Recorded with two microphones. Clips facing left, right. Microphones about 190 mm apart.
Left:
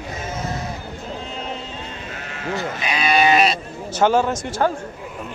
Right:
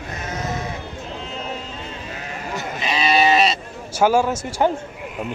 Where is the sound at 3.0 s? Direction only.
Centre (ahead or behind).